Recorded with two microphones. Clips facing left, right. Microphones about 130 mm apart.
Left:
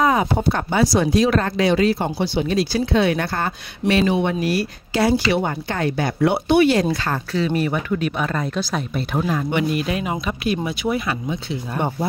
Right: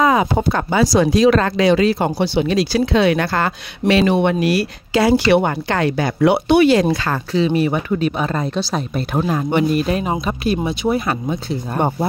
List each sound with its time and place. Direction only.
0.0 s a sound: 90° right
0.7 s speech: 90° right
2.0 s speech: 75° right (ahead or behind); by 7.2 s 90° right
7.6 s speech: 30° right (ahead or behind)
11.0 s speech: 40° right (ahead or behind)